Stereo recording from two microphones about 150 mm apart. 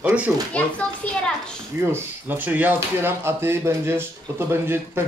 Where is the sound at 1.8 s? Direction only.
15° right (ahead or behind).